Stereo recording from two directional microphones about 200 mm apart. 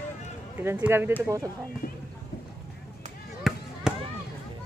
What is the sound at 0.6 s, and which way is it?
Speech, 10° right (ahead or behind).